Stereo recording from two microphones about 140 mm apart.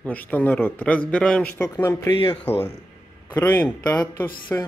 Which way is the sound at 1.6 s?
20° left (ahead or behind).